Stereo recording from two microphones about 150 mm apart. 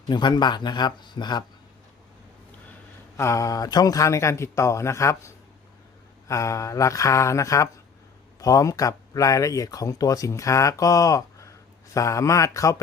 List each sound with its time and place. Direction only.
0.1 s speech: 30° left (ahead or behind)
3.2 s speech: 20° left (ahead or behind)